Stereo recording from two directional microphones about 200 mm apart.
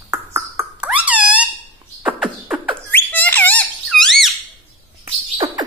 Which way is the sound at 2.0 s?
5° right (ahead or behind).